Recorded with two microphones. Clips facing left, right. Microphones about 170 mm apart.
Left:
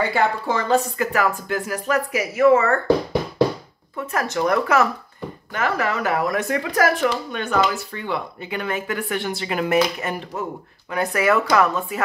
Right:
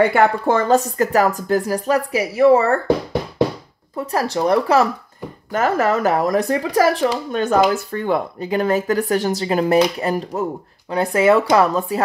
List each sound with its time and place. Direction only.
0.1 s speech: 55° right (ahead or behind); by 2.8 s 35° right (ahead or behind)
3.9 s speech: 35° right (ahead or behind)
5.5 s speech: 40° right (ahead or behind)